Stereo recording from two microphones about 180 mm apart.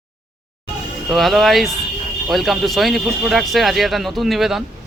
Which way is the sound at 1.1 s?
Centre (ahead or behind).